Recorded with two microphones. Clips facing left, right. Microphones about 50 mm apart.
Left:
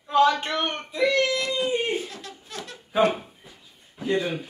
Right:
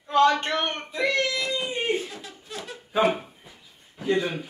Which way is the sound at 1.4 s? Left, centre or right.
Centre.